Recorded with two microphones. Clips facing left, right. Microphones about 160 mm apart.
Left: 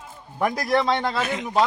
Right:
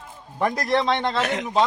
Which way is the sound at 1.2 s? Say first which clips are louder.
Right 2 dB; 75° right (ahead or behind).